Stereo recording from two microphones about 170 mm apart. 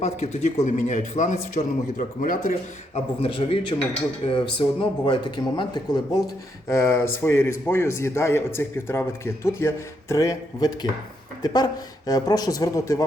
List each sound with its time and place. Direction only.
0.0 s a man's voice: 40° left (ahead or behind)
3.2 s a man's voice: 30° left (ahead or behind)
4.8 s speech: 25° left (ahead or behind)